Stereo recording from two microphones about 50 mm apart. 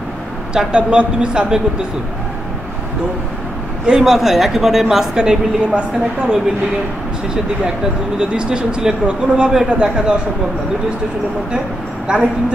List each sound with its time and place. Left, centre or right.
0.7 s a man's voice: right
3.8 s speech: centre
8.2 s speech: centre
12.1 s a man's voice: centre